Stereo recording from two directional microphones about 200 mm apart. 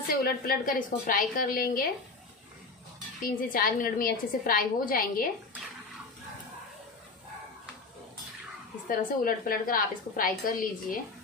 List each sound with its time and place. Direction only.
0.2 s a woman's voice: 45° left (ahead or behind)
3.2 s a woman's voice: 45° left (ahead or behind)
8.8 s a woman's voice: 45° left (ahead or behind)